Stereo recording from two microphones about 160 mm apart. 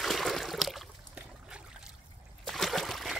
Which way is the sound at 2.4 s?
Centre (ahead or behind).